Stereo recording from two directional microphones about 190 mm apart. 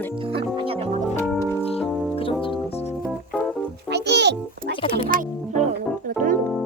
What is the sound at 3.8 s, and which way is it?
Music, 60° right (ahead or behind).